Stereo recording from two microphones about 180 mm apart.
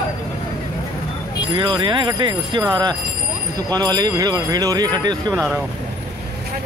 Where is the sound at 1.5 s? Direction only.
25° right (ahead or behind).